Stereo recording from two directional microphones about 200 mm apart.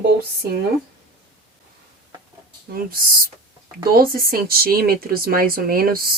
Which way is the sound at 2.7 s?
45° right (ahead or behind).